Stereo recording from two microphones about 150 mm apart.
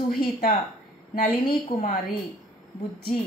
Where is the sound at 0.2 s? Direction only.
70° left (ahead or behind).